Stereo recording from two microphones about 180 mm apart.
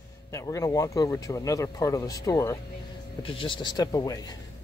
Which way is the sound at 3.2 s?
30° left (ahead or behind).